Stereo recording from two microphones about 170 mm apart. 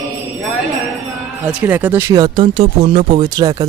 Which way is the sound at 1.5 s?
10° right (ahead or behind).